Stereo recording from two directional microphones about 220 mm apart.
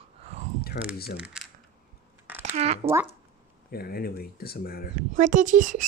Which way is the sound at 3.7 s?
45° left (ahead or behind).